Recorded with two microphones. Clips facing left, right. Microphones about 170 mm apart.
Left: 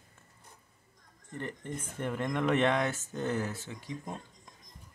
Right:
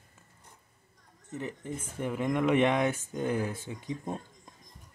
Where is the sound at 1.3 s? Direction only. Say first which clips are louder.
Right 2 dB; 5° right (ahead or behind).